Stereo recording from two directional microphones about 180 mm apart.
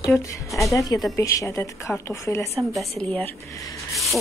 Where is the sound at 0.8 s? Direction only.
20° left (ahead or behind).